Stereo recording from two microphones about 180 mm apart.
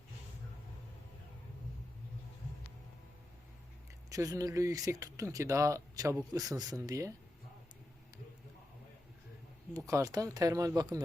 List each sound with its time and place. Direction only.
4.1 s speech: 20° right (ahead or behind)
9.7 s speech: 20° right (ahead or behind)